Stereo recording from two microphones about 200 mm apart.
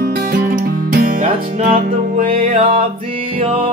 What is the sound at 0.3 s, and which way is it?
Music, 45° right (ahead or behind).